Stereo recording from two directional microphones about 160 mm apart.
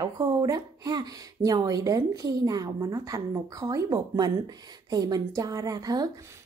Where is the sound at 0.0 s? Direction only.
25° right (ahead or behind).